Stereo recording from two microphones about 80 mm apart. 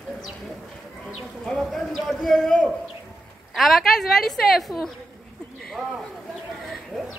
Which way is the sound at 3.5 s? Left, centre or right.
Centre.